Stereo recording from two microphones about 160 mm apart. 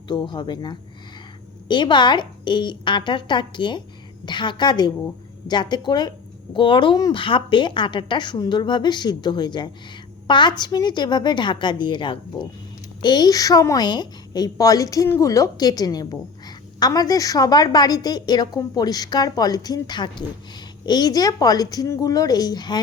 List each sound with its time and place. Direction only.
0.1 s a woman's voice: 30° left (ahead or behind)